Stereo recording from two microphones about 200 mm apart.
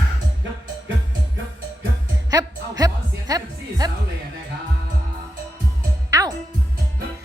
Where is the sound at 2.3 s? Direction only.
20° right (ahead or behind).